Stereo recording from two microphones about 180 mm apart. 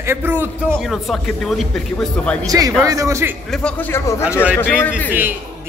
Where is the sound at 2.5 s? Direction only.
20° right (ahead or behind).